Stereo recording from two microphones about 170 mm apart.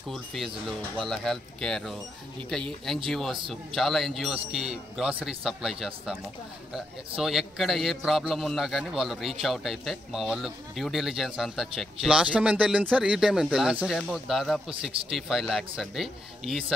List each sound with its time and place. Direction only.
0.1 s a man's voice: centre (ahead or behind)